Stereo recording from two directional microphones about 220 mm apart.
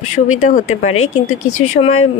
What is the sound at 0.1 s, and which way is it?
Speech, 35° left (ahead or behind).